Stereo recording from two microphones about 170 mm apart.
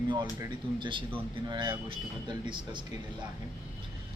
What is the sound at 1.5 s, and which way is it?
A man's voice, 25° right (ahead or behind).